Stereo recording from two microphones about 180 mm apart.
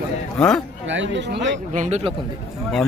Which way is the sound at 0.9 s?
90° right.